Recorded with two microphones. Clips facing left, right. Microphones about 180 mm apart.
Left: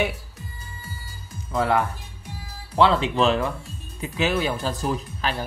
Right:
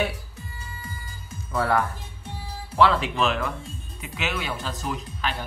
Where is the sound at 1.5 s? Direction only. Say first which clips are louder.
Left 2 dB; 15° left (ahead or behind).